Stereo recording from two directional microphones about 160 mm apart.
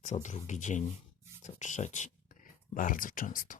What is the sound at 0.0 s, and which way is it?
Speech, 50° left (ahead or behind).